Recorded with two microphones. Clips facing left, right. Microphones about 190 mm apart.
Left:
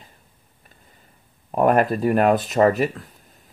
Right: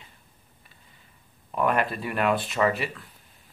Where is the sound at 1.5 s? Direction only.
45° left (ahead or behind).